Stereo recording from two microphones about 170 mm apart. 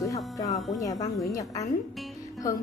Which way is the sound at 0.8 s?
20° left (ahead or behind).